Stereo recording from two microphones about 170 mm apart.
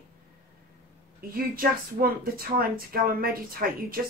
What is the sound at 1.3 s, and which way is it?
Speech, 60° right (ahead or behind).